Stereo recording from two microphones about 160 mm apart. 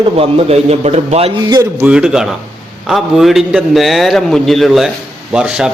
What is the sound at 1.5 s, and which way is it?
Speech, 20° right (ahead or behind).